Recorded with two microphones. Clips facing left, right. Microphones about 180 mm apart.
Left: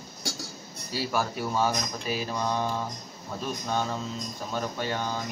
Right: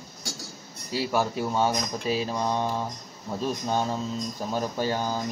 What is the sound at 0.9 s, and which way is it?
Speech, 20° right (ahead or behind).